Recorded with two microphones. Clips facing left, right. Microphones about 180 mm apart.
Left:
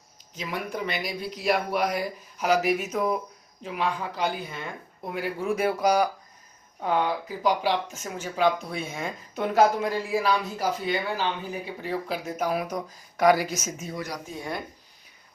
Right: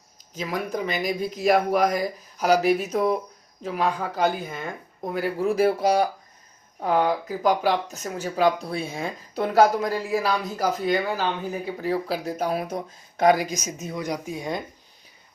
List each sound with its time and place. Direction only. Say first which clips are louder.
0.3 s speech: right 4 dB; 40° right (ahead or behind)
6.7 s speech: right 3 dB; 40° right (ahead or behind); by 14.6 s 15° right (ahead or behind)